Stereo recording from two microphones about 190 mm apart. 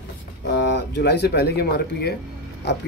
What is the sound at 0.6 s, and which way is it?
Speech, 65° left (ahead or behind).